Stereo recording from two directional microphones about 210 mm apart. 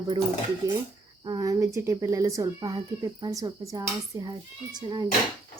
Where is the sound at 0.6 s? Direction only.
15° right (ahead or behind).